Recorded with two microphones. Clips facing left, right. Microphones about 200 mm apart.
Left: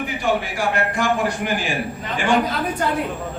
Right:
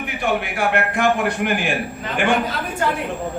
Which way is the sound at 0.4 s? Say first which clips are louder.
Right 1 dB; 60° right (ahead or behind).